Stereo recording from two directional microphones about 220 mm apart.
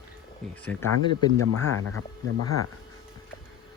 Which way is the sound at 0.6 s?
5° left (ahead or behind).